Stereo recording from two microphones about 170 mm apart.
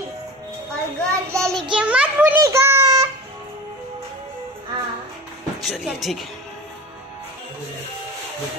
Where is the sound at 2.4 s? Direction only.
15° right (ahead or behind).